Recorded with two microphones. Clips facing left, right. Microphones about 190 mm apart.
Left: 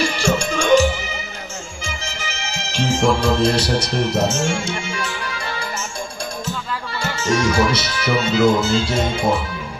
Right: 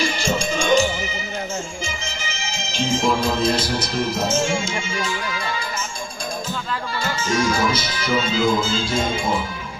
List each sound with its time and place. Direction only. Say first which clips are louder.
0.2 s music: left 3 dB; 70° left (ahead or behind)
2.1 s speech: left 1 dB; 70° left (ahead or behind)
7.0 s speech: left 3 dB; 70° left (ahead or behind)